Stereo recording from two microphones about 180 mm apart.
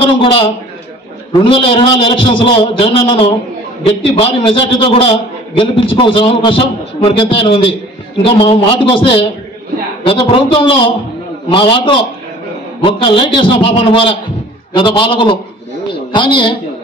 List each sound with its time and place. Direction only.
0.0 s a man's voice: 30° left (ahead or behind)